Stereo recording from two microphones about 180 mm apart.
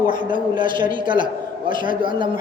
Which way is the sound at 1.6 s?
50° left (ahead or behind).